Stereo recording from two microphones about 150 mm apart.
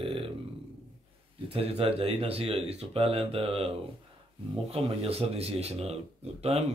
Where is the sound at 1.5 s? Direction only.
40° right (ahead or behind).